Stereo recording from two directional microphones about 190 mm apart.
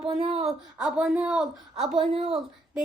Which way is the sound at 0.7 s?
5° right (ahead or behind).